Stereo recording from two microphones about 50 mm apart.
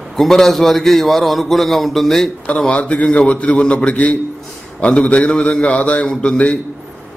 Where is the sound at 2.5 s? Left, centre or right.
Left.